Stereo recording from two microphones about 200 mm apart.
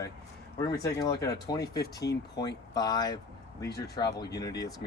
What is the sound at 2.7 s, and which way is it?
Speech, 20° left (ahead or behind).